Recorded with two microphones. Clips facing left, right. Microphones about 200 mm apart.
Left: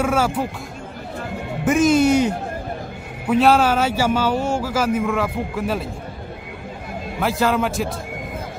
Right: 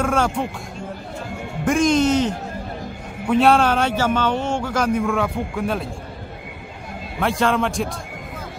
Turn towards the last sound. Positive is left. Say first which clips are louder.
# even
turn(degrees=5)  # may be behind; listen again after turning